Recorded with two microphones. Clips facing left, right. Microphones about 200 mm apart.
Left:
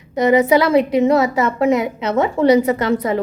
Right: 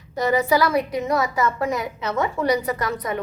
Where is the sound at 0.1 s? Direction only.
20° left (ahead or behind).